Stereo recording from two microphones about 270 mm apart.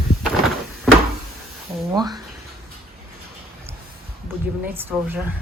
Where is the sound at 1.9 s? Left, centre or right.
Centre.